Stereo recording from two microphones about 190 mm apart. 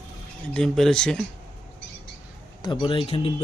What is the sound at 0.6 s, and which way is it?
Speech, 5° left (ahead or behind).